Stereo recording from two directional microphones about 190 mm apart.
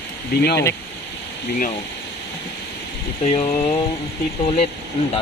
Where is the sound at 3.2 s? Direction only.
35° left (ahead or behind).